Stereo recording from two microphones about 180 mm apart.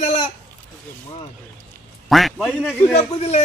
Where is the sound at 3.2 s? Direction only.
35° left (ahead or behind).